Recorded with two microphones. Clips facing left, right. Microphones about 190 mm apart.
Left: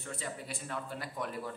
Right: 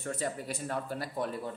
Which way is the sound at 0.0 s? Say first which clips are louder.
Right 6 dB; 45° right (ahead or behind).